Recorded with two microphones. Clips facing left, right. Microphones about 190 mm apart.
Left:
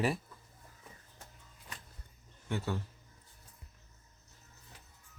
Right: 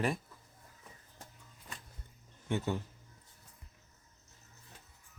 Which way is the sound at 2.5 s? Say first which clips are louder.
Right 2 dB; 20° right (ahead or behind).